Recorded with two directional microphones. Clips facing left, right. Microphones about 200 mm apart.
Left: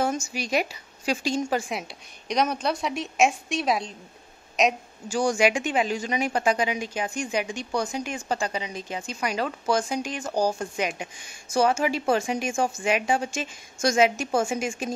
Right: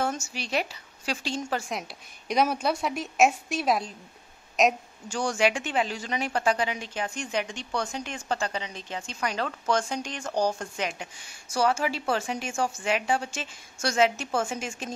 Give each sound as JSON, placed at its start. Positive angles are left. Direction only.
{"t": 0.3, "sound": "a woman's voice", "side_deg": 10}